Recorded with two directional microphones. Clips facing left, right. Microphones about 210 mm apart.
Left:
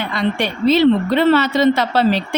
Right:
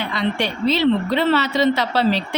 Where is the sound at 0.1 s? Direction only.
50° left (ahead or behind).